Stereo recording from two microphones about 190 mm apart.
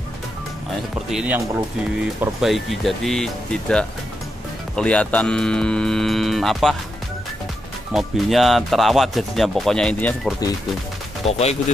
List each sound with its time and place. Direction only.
1.1 s speech: 10° right (ahead or behind)
7.9 s speech: centre (ahead or behind)
11.2 s speech: 35° left (ahead or behind)